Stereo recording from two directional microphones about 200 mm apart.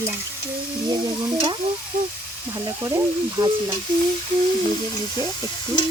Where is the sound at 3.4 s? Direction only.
20° right (ahead or behind).